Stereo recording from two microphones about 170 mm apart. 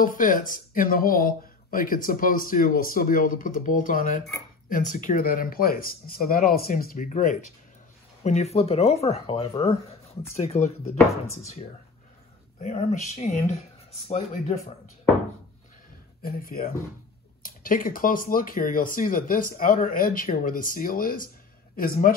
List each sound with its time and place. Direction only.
0.0 s speech: 55° left (ahead or behind); by 10.7 s 40° left (ahead or behind)
12.5 s speech: 45° left (ahead or behind)
16.2 s speech: 60° left (ahead or behind)